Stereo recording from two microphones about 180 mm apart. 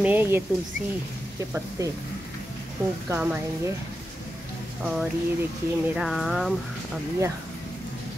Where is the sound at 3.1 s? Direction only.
10° right (ahead or behind).